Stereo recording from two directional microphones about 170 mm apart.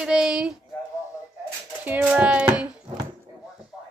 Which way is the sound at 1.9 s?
10° right (ahead or behind).